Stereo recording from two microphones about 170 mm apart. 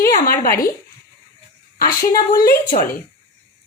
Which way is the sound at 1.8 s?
55° left (ahead or behind).